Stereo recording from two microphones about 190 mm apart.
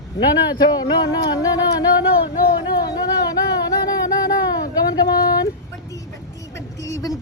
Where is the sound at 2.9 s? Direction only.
20° left (ahead or behind).